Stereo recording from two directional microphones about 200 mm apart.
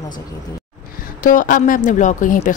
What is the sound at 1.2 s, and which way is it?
Speech, 45° left (ahead or behind).